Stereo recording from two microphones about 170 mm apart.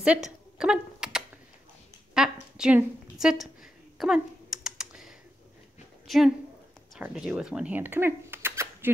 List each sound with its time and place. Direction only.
0.0 s a sound: 5° right (ahead or behind)
2.5 s speech: 5° right (ahead or behind)
4.0 s typing: 5° right (ahead or behind)
6.0 s a woman's voice: centre (ahead or behind)